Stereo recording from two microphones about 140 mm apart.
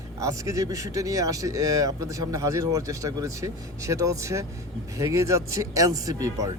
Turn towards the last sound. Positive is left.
turn(degrees=-25)  # may be behind; listen again after turning